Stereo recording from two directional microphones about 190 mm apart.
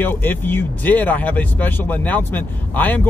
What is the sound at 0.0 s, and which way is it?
Speech, 10° left (ahead or behind).